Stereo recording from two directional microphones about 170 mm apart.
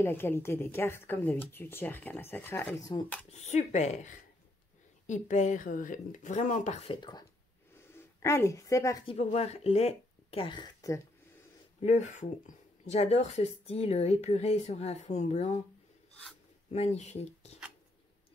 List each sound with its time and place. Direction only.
0.0 s speech: 15° left (ahead or behind)
3.3 s a woman's voice: 40° left (ahead or behind); by 9.0 s 20° left (ahead or behind)
9.0 s speech: 40° left (ahead or behind); by 11.0 s 25° left (ahead or behind)
11.8 s speech: 45° left (ahead or behind)
16.7 s speech: 40° left (ahead or behind)